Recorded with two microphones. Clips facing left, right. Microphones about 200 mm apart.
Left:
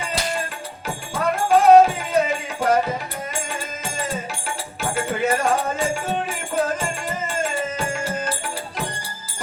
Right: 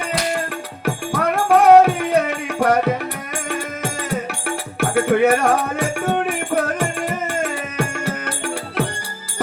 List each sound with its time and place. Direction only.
0.9 s music: 65° right (ahead or behind)